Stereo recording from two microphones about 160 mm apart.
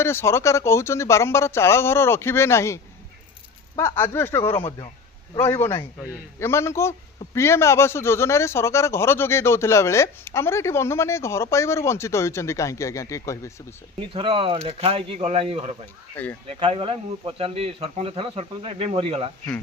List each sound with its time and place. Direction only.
0.0 s speech: 15° left (ahead or behind)
14.1 s speech: 35° right (ahead or behind)
16.1 s speech: 10° left (ahead or behind)
16.5 s speech: 35° right (ahead or behind)